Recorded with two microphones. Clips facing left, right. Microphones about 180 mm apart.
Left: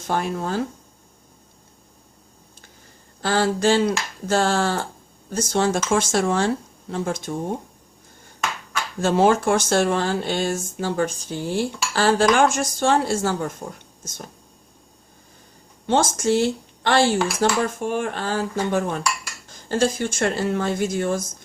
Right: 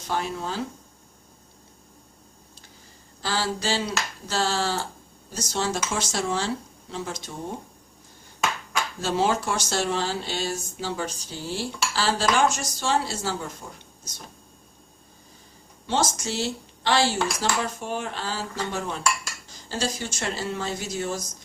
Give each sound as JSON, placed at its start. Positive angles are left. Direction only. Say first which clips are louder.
{"t": 0.0, "sound": "speech", "louder": "left 4 dB", "side_deg": 50}
{"t": 3.2, "sound": "speech", "louder": "left 7 dB", "side_deg": 55}
{"t": 9.0, "sound": "speech", "louder": "left 7 dB", "side_deg": 50}
{"t": 15.9, "sound": "speech", "louder": "left 7 dB", "side_deg": 50}